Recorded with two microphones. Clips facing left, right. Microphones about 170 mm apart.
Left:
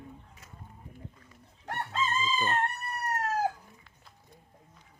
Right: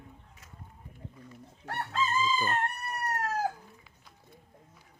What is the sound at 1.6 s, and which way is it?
Chicken, 20° left (ahead or behind).